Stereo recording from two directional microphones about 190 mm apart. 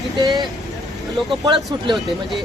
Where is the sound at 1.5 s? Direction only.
Centre (ahead or behind).